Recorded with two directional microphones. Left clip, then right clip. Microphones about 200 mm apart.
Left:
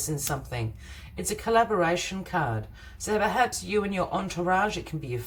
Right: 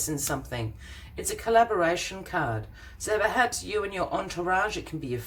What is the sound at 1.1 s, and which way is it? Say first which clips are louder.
Speech: right 1 dB; 25° right (ahead or behind).